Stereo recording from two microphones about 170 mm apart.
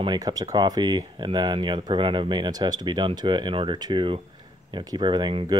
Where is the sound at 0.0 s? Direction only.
25° right (ahead or behind).